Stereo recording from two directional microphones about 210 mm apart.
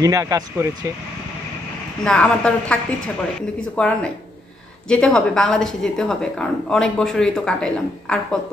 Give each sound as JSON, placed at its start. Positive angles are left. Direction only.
{"t": 0.0, "sound": "speech", "side_deg": -15}
{"t": 2.0, "sound": "a woman's voice", "side_deg": 5}